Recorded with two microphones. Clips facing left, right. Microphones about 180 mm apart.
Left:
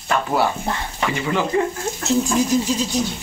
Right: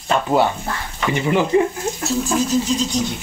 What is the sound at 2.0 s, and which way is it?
Speech, 10° left (ahead or behind).